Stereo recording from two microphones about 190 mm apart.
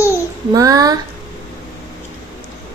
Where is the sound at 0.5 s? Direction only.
20° right (ahead or behind).